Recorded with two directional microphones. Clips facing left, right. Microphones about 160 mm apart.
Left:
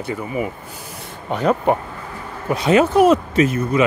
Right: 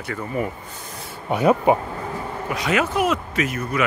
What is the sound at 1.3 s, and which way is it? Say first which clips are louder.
Speech: right 1 dB; 10° right (ahead or behind).